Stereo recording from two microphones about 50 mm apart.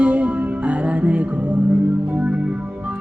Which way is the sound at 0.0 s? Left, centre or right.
Right.